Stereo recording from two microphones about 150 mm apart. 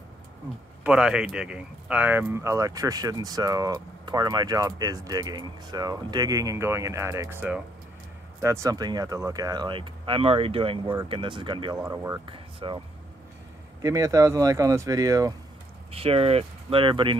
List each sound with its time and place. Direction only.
0.8 s speech: 5° right (ahead or behind); by 11.8 s 30° right (ahead or behind)
11.9 s speech: 15° right (ahead or behind)
12.3 s speech: 35° right (ahead or behind)
13.8 s speech: 20° right (ahead or behind)
15.9 s speech: 40° right (ahead or behind)